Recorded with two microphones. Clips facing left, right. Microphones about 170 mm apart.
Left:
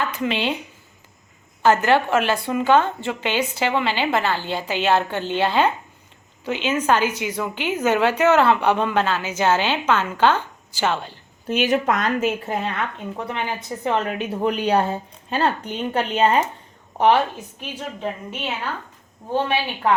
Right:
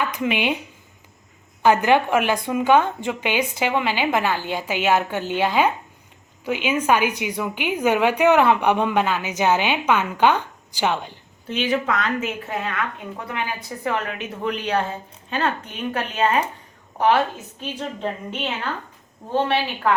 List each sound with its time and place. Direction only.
0.0 s speech: 15° right (ahead or behind)
1.6 s a woman's voice: 15° right (ahead or behind)
11.4 s a woman's voice: 45° left (ahead or behind); by 16.4 s 30° left (ahead or behind)
17.6 s speech: 10° left (ahead or behind)